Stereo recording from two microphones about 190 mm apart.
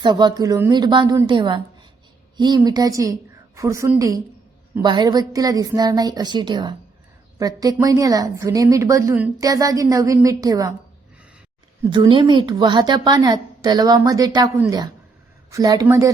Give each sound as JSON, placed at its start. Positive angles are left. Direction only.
{"t": 0.0, "sound": "a woman's voice", "side_deg": -25}
{"t": 11.8, "sound": "a woman's voice", "side_deg": -25}